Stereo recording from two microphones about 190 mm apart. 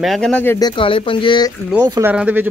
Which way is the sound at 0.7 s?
30° left (ahead or behind).